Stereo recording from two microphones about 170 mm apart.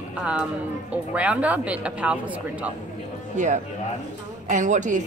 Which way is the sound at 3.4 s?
45° right (ahead or behind).